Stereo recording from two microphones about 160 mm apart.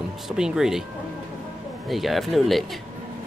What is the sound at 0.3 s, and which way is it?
Speech, 5° right (ahead or behind).